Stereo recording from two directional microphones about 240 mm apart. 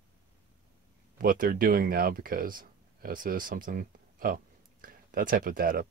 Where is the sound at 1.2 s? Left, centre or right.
Right.